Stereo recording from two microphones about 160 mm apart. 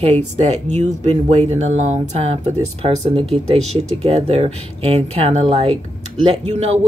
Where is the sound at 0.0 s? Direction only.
45° right (ahead or behind).